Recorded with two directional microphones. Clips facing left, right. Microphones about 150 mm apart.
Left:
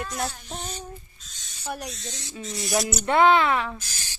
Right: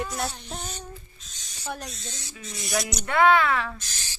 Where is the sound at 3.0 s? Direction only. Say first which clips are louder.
Left 1 dB; 25° left (ahead or behind).